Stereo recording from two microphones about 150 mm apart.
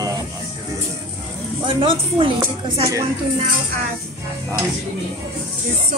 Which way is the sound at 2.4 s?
20° right (ahead or behind).